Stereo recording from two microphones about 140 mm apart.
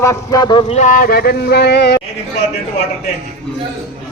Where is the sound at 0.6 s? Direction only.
55° left (ahead or behind); by 1.3 s 90° left.